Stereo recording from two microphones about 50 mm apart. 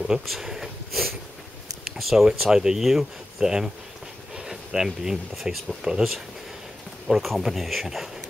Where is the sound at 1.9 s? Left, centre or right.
Centre.